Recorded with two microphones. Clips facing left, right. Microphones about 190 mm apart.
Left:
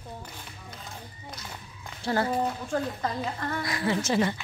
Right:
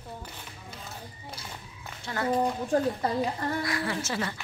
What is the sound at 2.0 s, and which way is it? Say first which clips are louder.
Speech: left 4 dB; 35° left (ahead or behind).